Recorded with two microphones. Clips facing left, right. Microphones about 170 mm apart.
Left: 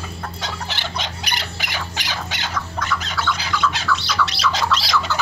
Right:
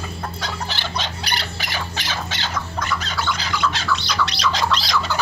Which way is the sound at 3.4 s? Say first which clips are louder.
Left 1 dB; 5° left (ahead or behind).